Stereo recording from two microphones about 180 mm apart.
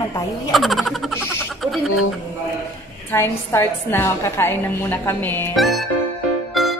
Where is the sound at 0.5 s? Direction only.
Centre (ahead or behind).